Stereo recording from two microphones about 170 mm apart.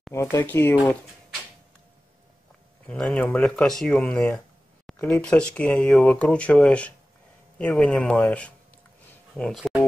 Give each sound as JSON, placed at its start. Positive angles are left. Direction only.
{"t": 0.1, "sound": "speech", "side_deg": 15}
{"t": 2.9, "sound": "speech", "side_deg": 5}